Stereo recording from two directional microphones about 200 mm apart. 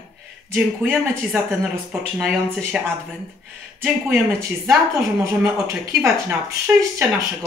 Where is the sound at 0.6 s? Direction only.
5° right (ahead or behind).